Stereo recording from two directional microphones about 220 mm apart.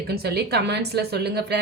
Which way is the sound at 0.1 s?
45° right (ahead or behind).